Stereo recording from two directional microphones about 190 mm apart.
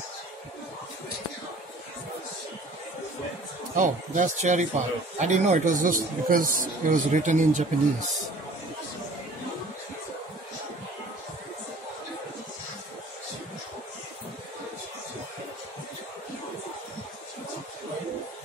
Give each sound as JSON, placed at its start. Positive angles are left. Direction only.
{"t": 3.7, "sound": "speech", "side_deg": -40}